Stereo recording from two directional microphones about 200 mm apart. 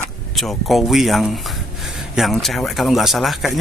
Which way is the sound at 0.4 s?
Centre (ahead or behind).